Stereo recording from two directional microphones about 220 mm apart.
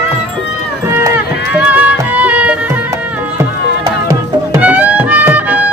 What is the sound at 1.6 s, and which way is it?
Music, 5° right (ahead or behind).